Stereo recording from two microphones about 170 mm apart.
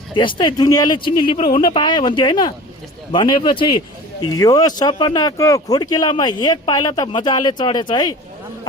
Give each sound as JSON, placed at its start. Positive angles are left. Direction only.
{"t": 0.1, "sound": "speech", "side_deg": 30}